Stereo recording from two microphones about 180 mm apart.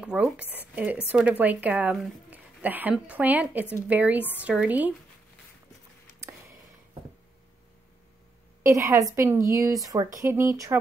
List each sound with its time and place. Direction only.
0.0 s speech: 5° right (ahead or behind)
8.6 s speech: 15° right (ahead or behind)